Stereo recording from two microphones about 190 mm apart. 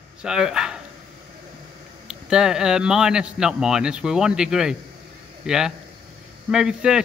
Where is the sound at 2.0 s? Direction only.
5° right (ahead or behind).